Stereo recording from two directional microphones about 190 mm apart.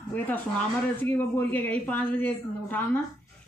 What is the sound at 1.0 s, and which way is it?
Speech, 10° left (ahead or behind).